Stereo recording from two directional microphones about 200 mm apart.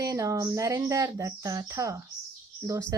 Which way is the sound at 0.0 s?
15° right (ahead or behind).